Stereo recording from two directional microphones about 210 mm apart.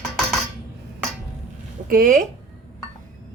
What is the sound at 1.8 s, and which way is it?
Speech, 40° right (ahead or behind).